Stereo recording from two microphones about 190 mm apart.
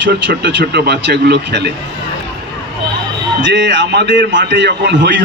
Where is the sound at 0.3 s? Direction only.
60° right (ahead or behind).